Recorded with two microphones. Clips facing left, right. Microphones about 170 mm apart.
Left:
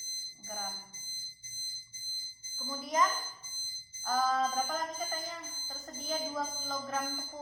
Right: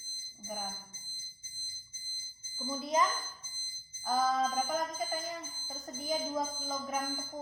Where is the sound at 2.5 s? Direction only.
20° right (ahead or behind).